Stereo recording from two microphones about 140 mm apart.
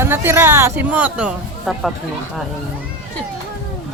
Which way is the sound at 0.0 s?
15° right (ahead or behind).